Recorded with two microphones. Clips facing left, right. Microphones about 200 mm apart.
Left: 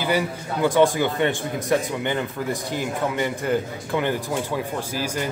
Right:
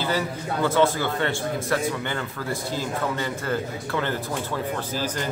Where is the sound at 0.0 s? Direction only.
15° left (ahead or behind).